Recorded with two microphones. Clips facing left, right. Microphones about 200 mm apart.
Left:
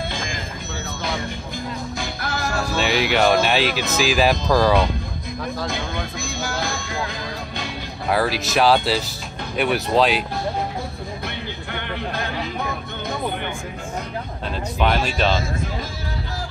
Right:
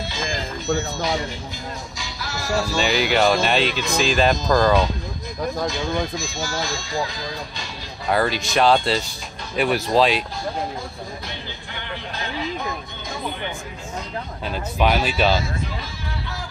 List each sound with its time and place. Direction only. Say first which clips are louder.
2.0 s music: left 5 dB; 55° left (ahead or behind)
2.8 s speech: left 1 dB; centre (ahead or behind)
5.7 s speech: right 3 dB; 55° left (ahead or behind)
8.1 s speech: even; centre (ahead or behind)
14.5 s speech: right 1 dB; 5° right (ahead or behind)